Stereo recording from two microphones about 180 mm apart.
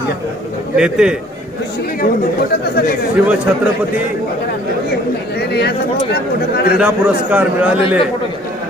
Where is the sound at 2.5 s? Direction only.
60° left (ahead or behind).